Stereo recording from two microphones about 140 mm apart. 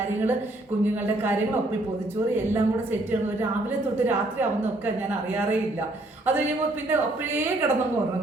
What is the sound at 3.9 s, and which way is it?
A woman's voice, 15° right (ahead or behind).